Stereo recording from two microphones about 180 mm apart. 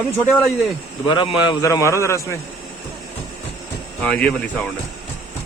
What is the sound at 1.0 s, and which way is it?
A man's voice, 25° left (ahead or behind).